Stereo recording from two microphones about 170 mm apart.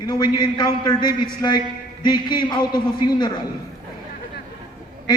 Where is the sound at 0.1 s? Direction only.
25° left (ahead or behind).